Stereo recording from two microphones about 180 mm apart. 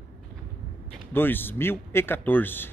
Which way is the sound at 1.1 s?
10° left (ahead or behind).